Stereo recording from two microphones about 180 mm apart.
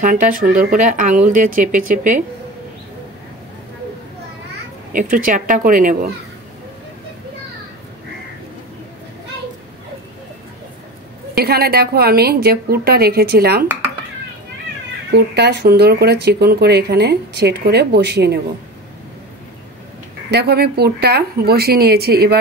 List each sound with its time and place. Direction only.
0.0 s speech: 45° right (ahead or behind)
4.9 s speech: 50° right (ahead or behind)
11.3 s speech: 60° right (ahead or behind)
15.0 s speech: 65° right (ahead or behind)
20.2 s speech: 65° right (ahead or behind)